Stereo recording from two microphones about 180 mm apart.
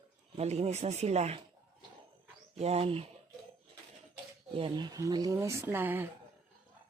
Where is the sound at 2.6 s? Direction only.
35° right (ahead or behind).